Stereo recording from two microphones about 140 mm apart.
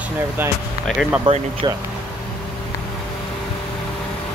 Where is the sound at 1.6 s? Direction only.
35° right (ahead or behind).